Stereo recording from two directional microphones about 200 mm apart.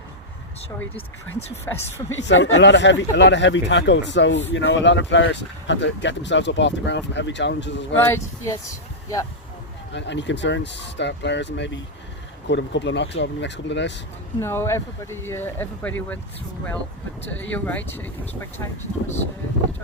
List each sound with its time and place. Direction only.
1.7 s speech: 15° left (ahead or behind)
2.0 s speech: 65° left (ahead or behind)
7.9 s speech: 10° left (ahead or behind)
9.9 s speech: 60° left (ahead or behind)
14.4 s speech: 15° left (ahead or behind)
17.5 s speech: 10° left (ahead or behind)